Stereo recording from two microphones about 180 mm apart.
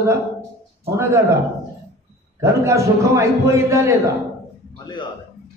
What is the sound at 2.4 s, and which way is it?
A man's voice, 15° right (ahead or behind).